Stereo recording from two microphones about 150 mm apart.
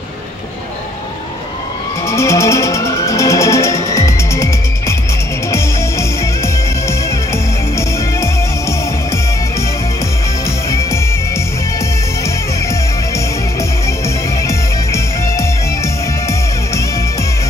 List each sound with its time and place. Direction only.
2.0 s music: 20° left (ahead or behind)
10.7 s music: 20° left (ahead or behind)
14.0 s music: 20° left (ahead or behind)